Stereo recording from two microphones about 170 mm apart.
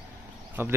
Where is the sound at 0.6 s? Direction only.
15° right (ahead or behind).